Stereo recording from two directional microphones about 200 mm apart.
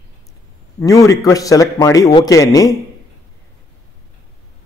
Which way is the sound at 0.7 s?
15° left (ahead or behind).